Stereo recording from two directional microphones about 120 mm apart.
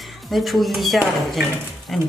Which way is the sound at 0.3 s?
Centre (ahead or behind).